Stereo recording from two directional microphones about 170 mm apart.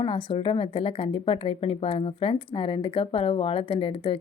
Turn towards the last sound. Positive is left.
turn(degrees=30)  # may be behind; listen again after turning